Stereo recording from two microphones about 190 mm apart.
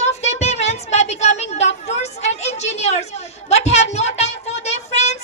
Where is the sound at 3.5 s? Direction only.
35° left (ahead or behind).